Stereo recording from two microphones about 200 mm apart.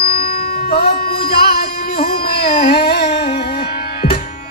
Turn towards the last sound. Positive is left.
turn(degrees=45)  # may be behind; listen again after turning